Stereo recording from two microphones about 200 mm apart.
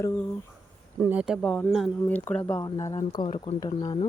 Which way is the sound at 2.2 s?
10° left (ahead or behind).